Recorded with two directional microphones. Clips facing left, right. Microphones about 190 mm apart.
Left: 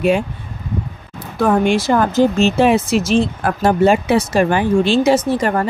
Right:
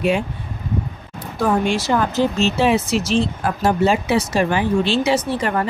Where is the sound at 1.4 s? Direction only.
55° left (ahead or behind).